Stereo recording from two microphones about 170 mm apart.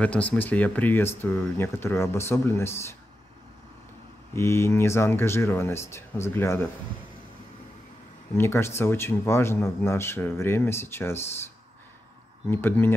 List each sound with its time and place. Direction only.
0.0 s speech: 10° left (ahead or behind)
4.4 s speech: 15° left (ahead or behind)
8.4 s speech: 15° left (ahead or behind)
12.4 s speech: 15° left (ahead or behind)